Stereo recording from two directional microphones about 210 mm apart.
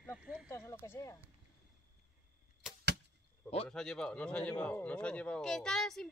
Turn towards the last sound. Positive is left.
turn(degrees=0)  # may be behind; listen again after turning